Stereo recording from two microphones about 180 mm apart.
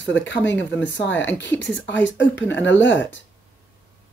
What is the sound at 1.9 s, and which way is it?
Speech, 90° left.